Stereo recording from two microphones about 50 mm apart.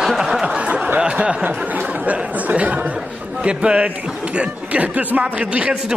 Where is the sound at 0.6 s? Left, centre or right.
Right.